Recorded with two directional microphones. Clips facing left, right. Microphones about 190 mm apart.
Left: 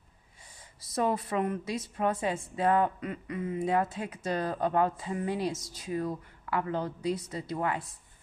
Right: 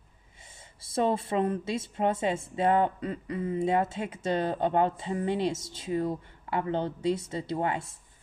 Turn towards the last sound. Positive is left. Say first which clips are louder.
# right 2 dB
turn(degrees=-25)  # may be behind; listen again after turning